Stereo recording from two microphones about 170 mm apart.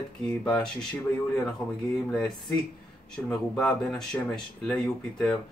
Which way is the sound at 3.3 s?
5° left (ahead or behind).